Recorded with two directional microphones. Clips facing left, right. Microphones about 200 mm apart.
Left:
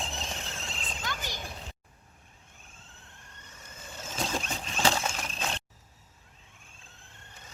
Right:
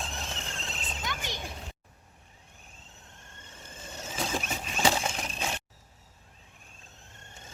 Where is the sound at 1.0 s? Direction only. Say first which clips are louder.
Right 1 dB; 20° right (ahead or behind).